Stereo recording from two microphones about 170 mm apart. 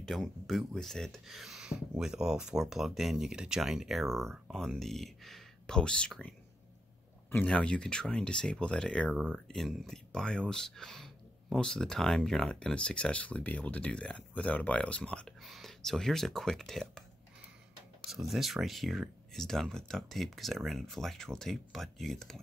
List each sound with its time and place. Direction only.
0.0 s speech: centre (ahead or behind)
18.1 s speech: centre (ahead or behind)